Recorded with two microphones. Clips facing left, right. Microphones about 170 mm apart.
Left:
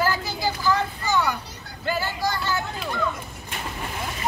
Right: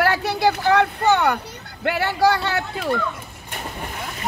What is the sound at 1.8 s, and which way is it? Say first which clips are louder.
Speech: right 7 dB; 65° right (ahead or behind).